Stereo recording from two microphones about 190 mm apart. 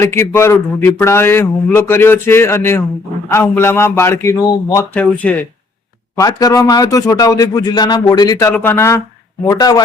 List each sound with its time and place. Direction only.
0.0 s a man's voice: 15° left (ahead or behind)
6.1 s speech: 20° left (ahead or behind)